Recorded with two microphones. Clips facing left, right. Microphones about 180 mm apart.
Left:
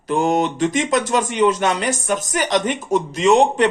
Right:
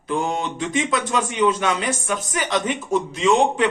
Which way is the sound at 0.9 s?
40° left (ahead or behind).